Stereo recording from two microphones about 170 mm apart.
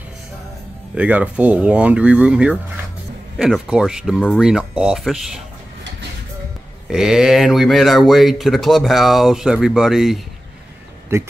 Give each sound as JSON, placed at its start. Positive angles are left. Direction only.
{"t": 0.9, "sound": "speech", "side_deg": -10}
{"t": 6.9, "sound": "speech", "side_deg": -5}
{"t": 11.1, "sound": "speech", "side_deg": -15}